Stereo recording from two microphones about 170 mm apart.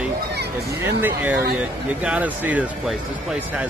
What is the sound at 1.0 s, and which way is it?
A man's voice, 10° right (ahead or behind).